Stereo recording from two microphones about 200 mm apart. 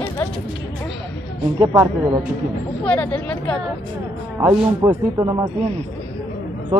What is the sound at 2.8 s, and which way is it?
Speech, 5° left (ahead or behind).